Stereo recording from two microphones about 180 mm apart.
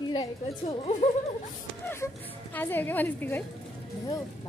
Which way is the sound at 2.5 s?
10° left (ahead or behind).